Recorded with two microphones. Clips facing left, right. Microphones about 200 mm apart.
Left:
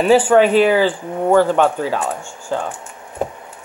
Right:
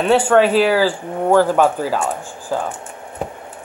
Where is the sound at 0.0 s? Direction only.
5° left (ahead or behind).